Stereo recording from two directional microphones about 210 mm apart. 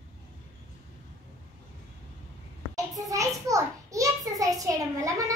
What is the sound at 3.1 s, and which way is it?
A child's voice, 15° right (ahead or behind).